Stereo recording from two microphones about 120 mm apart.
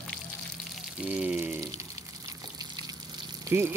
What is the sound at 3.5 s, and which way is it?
Speech, 20° right (ahead or behind).